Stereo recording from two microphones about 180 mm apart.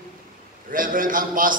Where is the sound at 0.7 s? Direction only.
50° right (ahead or behind).